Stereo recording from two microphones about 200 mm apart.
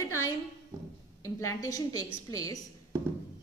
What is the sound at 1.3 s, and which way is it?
A woman's voice, 90° left.